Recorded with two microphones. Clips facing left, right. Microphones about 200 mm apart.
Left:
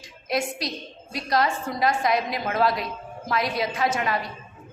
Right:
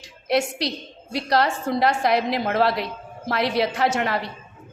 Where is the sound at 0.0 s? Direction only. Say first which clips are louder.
Right 5 dB; 70° right (ahead or behind).